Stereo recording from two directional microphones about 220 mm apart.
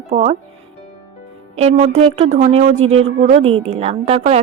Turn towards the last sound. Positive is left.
turn(degrees=-30)  # may be behind; listen again after turning